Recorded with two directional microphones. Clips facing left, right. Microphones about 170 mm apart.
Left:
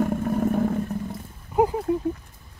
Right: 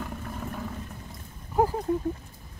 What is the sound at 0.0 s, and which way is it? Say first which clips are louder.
Vehicle: left 13 dB; 50° left (ahead or behind).